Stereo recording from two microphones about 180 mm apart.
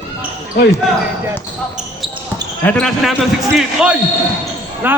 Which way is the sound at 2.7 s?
5° left (ahead or behind).